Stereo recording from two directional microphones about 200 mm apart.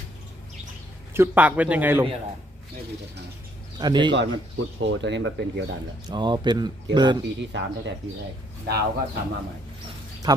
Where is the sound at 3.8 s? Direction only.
20° right (ahead or behind).